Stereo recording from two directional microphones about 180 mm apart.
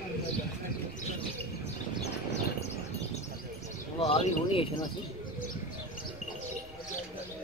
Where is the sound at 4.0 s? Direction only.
35° left (ahead or behind).